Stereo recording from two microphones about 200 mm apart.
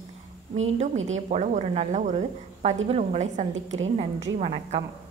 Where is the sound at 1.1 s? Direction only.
35° right (ahead or behind).